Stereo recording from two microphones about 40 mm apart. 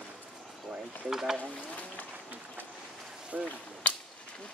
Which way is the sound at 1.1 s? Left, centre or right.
Centre.